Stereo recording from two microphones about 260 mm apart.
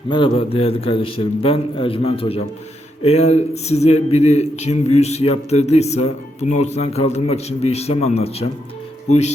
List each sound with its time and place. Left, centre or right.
0.1 s speech: centre